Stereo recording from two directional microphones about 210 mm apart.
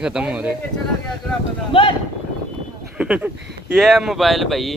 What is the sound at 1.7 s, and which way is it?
Speech, 25° left (ahead or behind).